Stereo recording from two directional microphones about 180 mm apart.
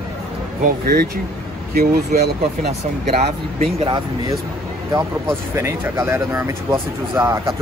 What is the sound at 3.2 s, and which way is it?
Speech, 35° right (ahead or behind).